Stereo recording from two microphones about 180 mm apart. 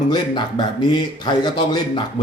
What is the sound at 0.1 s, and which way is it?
Speech, 25° left (ahead or behind).